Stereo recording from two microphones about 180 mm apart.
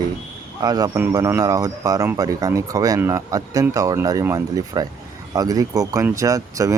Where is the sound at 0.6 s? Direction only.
20° right (ahead or behind).